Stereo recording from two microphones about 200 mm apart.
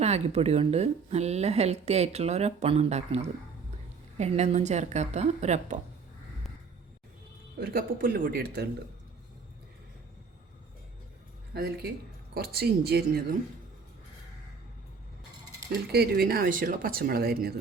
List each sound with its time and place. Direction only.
0.0 s speech: 30° right (ahead or behind)
7.6 s speech: 45° right (ahead or behind)
11.5 s speech: 50° right (ahead or behind)
15.9 s speech: 50° right (ahead or behind)